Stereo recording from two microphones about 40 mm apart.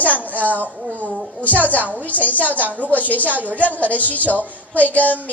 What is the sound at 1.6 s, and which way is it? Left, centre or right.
A woman's voice, left.